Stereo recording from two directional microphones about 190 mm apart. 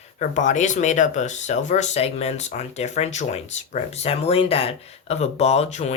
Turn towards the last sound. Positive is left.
turn(degrees=35)  # may be behind; listen again after turning